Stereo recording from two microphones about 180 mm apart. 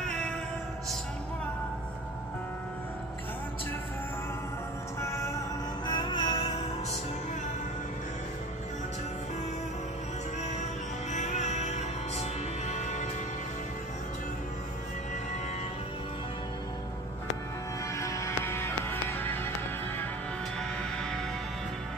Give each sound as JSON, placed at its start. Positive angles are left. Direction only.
{"t": 0.0, "sound": "music", "side_deg": 5}
{"t": 5.0, "sound": "music", "side_deg": 15}
{"t": 11.1, "sound": "music", "side_deg": 40}
{"t": 17.9, "sound": "music", "side_deg": 15}